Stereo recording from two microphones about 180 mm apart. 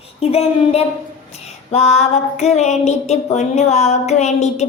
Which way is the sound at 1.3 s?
35° left (ahead or behind).